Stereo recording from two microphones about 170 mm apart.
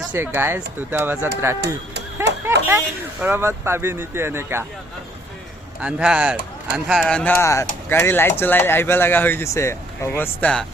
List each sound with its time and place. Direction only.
0.1 s speech: 15° right (ahead or behind)
2.6 s speech: 10° right (ahead or behind)
5.8 s speech: 5° right (ahead or behind)
7.0 s speech: 5° left (ahead or behind)
7.3 s speech: 15° left (ahead or behind)